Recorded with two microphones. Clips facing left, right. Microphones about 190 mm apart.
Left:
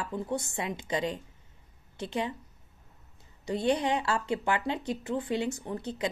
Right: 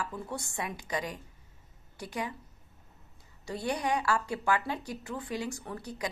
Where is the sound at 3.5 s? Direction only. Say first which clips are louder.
Left 4 dB; 20° left (ahead or behind).